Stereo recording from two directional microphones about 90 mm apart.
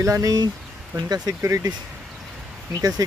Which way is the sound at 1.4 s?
35° right (ahead or behind).